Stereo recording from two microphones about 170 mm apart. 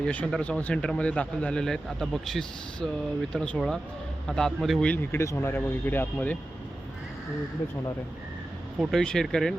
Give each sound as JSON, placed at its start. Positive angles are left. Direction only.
{"t": 0.0, "sound": "speech", "side_deg": 5}
{"t": 8.8, "sound": "speech", "side_deg": 5}